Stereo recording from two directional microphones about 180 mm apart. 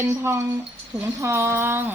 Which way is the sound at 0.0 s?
15° right (ahead or behind).